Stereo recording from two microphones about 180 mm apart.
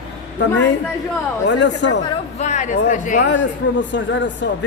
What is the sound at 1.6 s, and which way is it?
Speech, 80° left.